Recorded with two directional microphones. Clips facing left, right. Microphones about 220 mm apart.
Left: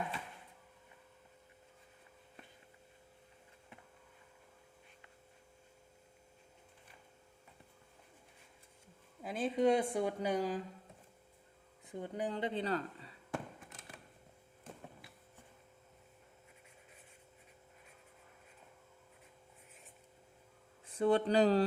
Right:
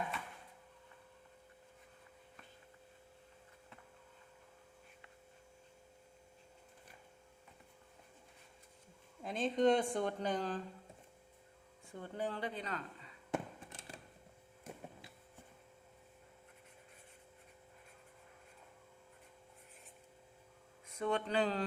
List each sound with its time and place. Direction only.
9.2 s speech: 5° left (ahead or behind)
11.9 s speech: 15° left (ahead or behind); by 13.1 s 35° left (ahead or behind)
13.3 s fireworks: 30° right (ahead or behind)
20.8 s speech: 30° left (ahead or behind)